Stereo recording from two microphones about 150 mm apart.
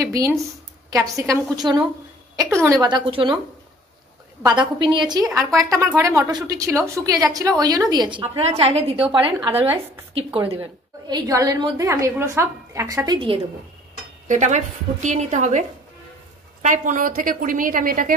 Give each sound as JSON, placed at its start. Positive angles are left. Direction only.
{"t": 0.0, "sound": "a woman's voice", "side_deg": -20}
{"t": 4.5, "sound": "a woman's voice", "side_deg": -30}
{"t": 9.5, "sound": "speech", "side_deg": -10}
{"t": 10.1, "sound": "a woman's voice", "side_deg": -40}
{"t": 14.2, "sound": "a woman's voice", "side_deg": -55}
{"t": 16.6, "sound": "a woman's voice", "side_deg": -60}